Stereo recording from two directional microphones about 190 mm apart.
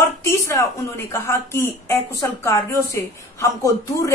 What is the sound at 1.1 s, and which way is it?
Speech, 15° left (ahead or behind).